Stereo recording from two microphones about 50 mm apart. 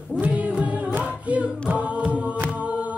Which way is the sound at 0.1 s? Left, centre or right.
Right.